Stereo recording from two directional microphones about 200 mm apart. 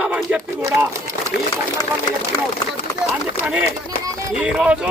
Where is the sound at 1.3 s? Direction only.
50° left (ahead or behind).